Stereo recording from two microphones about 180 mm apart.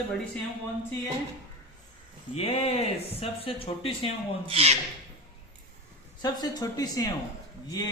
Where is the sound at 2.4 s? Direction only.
35° left (ahead or behind).